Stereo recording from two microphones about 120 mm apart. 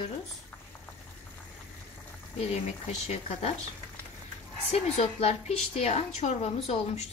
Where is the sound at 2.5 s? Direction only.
65° left (ahead or behind).